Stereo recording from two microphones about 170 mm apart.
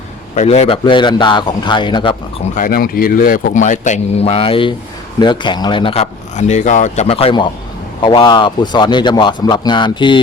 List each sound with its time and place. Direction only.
0.3 s a man's voice: 40° left (ahead or behind)
2.6 s a man's voice: 60° left (ahead or behind); by 10.2 s 30° left (ahead or behind)